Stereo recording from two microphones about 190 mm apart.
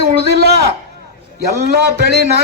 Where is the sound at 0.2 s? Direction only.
60° right (ahead or behind).